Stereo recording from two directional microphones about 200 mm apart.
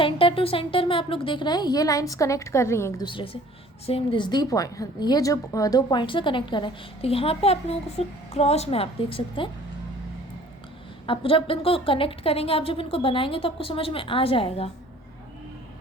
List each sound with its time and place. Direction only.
0.0 s a woman's voice: 25° left (ahead or behind)
11.0 s a woman's voice: 25° left (ahead or behind)